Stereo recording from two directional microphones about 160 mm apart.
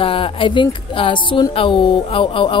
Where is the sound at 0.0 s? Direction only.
35° left (ahead or behind).